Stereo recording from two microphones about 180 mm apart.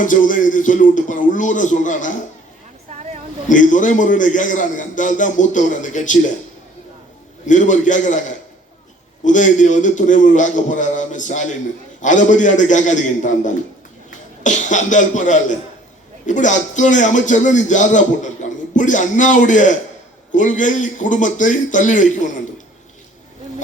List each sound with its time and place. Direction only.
0.0 s a man's voice: 45° left (ahead or behind)
3.5 s a man's voice: 45° left (ahead or behind)
7.4 s a man's voice: 45° left (ahead or behind)